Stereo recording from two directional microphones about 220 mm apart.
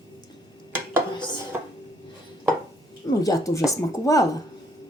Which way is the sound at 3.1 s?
15° left (ahead or behind).